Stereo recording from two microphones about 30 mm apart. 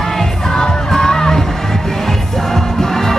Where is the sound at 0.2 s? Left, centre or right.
Left.